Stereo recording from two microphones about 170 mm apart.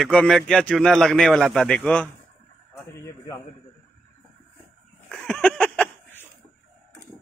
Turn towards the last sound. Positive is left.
turn(degrees=5)  # may be behind; listen again after turning